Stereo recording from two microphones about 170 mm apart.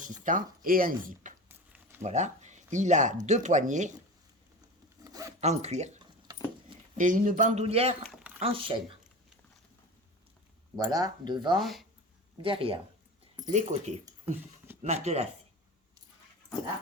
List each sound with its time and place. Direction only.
0.0 s speech: 50° right (ahead or behind)
2.0 s speech: 45° right (ahead or behind)
5.0 s zipper: 20° right (ahead or behind)
5.4 s speech: 40° right (ahead or behind)
8.0 s a sound: centre (ahead or behind)
8.4 s speech: 30° right (ahead or behind)
10.8 s speech: 25° right (ahead or behind)
11.6 s speech: centre (ahead or behind)
12.4 s speech: 30° right (ahead or behind)
13.5 s speech: 45° right (ahead or behind)